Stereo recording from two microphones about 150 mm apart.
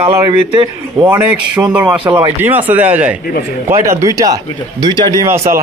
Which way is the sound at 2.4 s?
15° right (ahead or behind).